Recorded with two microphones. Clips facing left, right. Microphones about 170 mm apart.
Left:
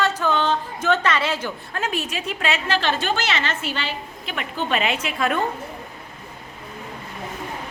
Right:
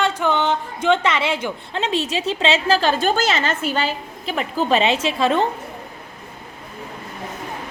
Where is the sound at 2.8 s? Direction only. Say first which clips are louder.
Right 5 dB; 40° right (ahead or behind).